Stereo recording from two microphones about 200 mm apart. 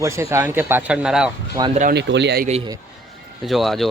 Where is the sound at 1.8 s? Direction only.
55° right (ahead or behind).